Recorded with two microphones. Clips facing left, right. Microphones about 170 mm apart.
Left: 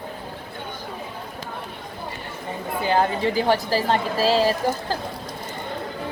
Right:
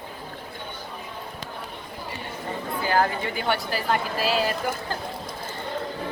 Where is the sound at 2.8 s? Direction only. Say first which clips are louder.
Left 3 dB; 25° left (ahead or behind).